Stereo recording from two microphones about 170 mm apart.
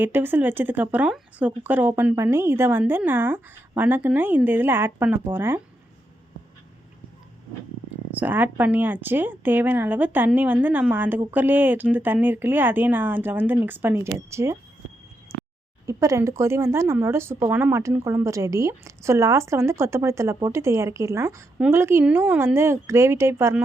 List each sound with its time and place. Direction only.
0.0 s speech: 10° right (ahead or behind)
8.1 s speech: 10° right (ahead or behind)
15.3 s a sound: 15° right (ahead or behind)
15.9 s speech: 20° right (ahead or behind)